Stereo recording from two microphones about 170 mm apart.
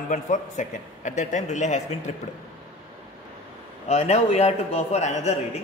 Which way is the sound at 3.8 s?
40° left (ahead or behind).